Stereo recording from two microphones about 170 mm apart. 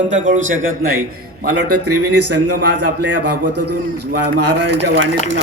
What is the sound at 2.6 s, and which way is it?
Speech, 85° right.